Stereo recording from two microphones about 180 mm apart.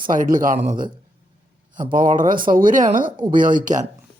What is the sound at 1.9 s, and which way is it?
Speech, 50° right (ahead or behind).